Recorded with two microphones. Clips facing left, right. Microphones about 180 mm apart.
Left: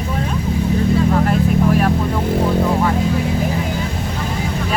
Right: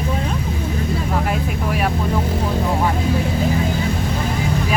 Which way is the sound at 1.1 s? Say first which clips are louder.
Left 6 dB; 10° right (ahead or behind).